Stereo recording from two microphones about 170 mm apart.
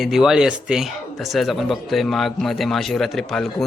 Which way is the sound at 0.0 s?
Centre (ahead or behind).